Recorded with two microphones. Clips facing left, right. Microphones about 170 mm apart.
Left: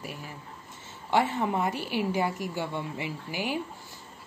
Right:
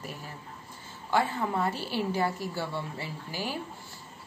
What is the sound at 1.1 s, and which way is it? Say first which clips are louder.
A woman's voice: left 2 dB; 25° left (ahead or behind).